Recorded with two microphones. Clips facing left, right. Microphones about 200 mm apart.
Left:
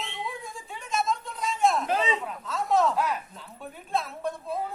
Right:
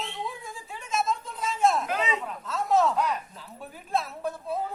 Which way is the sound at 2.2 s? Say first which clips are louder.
Even; centre (ahead or behind).